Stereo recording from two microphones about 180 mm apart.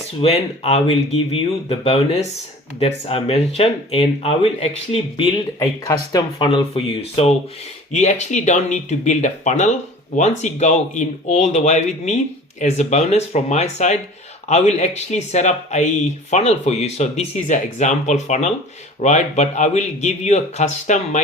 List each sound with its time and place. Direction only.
0.2 s speech: 35° left (ahead or behind)
5.5 s speech: 20° left (ahead or behind); by 21.2 s 40° left (ahead or behind)